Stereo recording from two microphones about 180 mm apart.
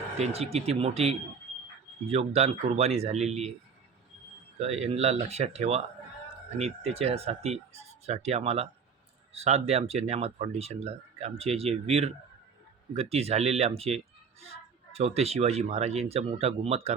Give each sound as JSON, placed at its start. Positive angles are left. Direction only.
{"t": 0.2, "sound": "speech", "side_deg": -35}
{"t": 4.6, "sound": "speech", "side_deg": -35}